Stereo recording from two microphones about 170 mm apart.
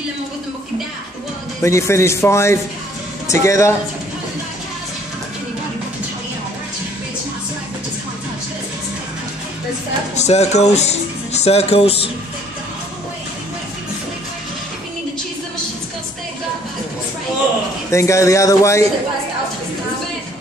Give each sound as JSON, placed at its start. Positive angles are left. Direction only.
{"t": 1.6, "sound": "a man's voice", "side_deg": 15}
{"t": 10.1, "sound": "speech", "side_deg": 40}
{"t": 17.9, "sound": "a man's voice", "side_deg": 20}